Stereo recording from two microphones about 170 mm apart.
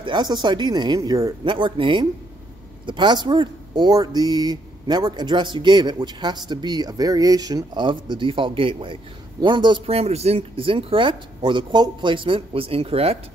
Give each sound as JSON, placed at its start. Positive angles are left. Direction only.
{"t": 0.0, "sound": "speech", "side_deg": -25}